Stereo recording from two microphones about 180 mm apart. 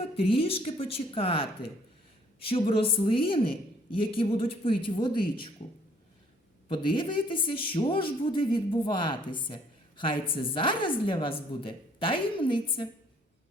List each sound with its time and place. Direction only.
0.0 s a woman's voice: 30° left (ahead or behind)
6.7 s a woman's voice: 30° left (ahead or behind)